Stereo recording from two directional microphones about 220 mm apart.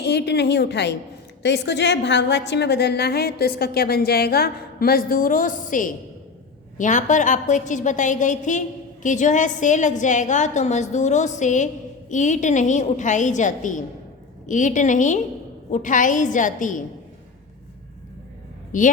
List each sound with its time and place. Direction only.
0.0 s a woman's voice: 50° left (ahead or behind)
18.7 s a woman's voice: 35° left (ahead or behind)